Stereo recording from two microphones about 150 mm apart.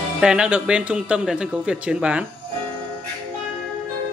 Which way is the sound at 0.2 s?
5° right (ahead or behind).